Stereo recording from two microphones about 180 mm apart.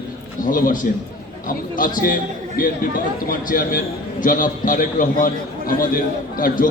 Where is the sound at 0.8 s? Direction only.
50° left (ahead or behind).